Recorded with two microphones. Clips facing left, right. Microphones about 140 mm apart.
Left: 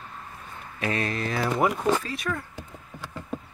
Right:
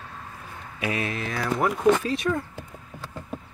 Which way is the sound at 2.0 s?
25° right (ahead or behind).